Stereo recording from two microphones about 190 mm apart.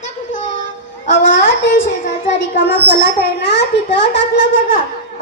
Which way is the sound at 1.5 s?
75° left (ahead or behind).